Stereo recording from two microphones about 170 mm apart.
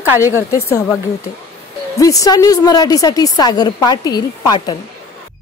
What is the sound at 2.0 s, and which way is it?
A woman's voice, 20° left (ahead or behind).